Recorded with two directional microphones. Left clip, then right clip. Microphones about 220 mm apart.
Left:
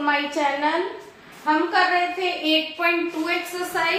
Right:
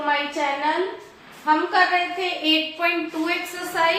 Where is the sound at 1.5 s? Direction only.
20° left (ahead or behind).